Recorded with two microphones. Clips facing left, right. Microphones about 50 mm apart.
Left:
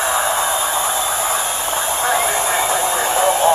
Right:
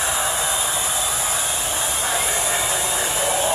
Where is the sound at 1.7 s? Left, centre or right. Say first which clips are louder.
Left 8 dB; left.